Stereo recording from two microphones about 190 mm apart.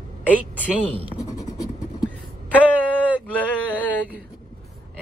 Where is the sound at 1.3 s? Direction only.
20° left (ahead or behind).